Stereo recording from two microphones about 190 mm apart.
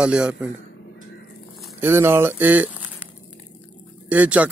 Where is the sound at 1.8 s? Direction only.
10° right (ahead or behind).